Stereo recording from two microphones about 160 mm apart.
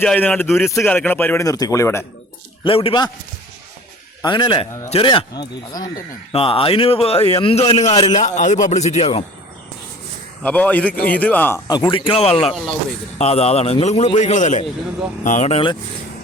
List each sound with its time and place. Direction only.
0.0 s a man's voice: 10° left (ahead or behind)
1.5 s speech: 20° left (ahead or behind)
2.6 s speech: 35° left (ahead or behind)
4.2 s speech: 30° left (ahead or behind)
6.3 s speech: 35° left (ahead or behind)
10.4 s a man's voice: 10° left (ahead or behind)
11.7 s speech: 30° left (ahead or behind)